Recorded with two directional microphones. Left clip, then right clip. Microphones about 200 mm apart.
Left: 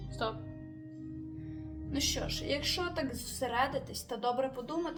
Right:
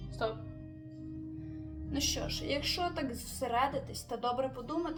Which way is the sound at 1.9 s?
20° left (ahead or behind).